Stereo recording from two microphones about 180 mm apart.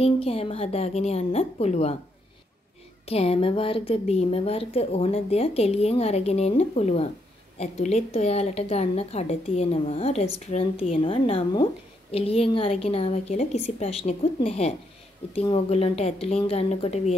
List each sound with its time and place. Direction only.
0.0 s speech: 30° left (ahead or behind)
3.1 s speech: 35° left (ahead or behind)